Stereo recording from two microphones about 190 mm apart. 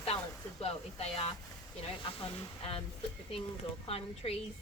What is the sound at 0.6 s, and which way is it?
Speech, 35° left (ahead or behind).